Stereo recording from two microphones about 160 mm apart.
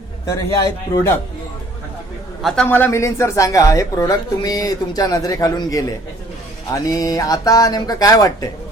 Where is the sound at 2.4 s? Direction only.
Centre (ahead or behind).